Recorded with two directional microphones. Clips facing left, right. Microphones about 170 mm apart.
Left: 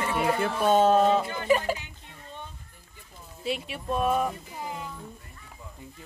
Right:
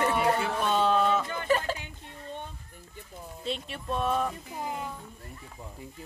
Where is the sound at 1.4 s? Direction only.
10° left (ahead or behind).